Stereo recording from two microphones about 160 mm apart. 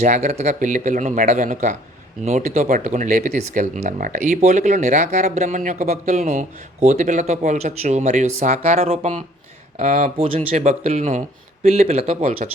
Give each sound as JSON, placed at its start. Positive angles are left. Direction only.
{"t": 0.0, "sound": "speech", "side_deg": -45}